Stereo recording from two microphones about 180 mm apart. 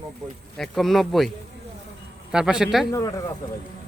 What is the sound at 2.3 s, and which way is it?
Speech, 5° right (ahead or behind).